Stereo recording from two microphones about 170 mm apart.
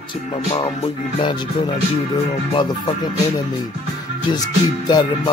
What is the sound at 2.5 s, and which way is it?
Music, 25° left (ahead or behind).